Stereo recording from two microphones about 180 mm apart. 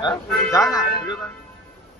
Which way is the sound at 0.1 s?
20° left (ahead or behind).